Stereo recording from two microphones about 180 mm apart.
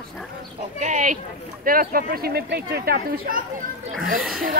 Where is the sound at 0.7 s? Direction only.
45° right (ahead or behind).